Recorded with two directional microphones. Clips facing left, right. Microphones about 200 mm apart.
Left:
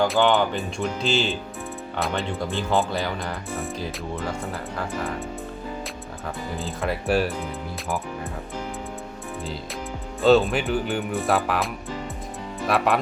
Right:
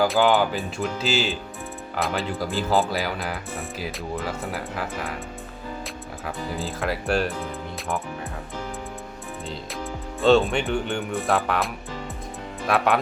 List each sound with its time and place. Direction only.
0.0 s speech: centre (ahead or behind)
6.2 s speech: centre (ahead or behind)
10.2 s speech: centre (ahead or behind)